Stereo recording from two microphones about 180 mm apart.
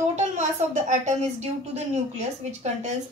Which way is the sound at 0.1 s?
40° right (ahead or behind).